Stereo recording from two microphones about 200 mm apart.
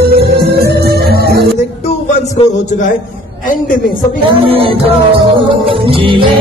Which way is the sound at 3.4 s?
45° left (ahead or behind).